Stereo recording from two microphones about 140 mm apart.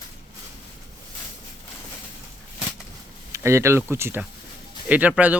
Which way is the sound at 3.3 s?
20° right (ahead or behind).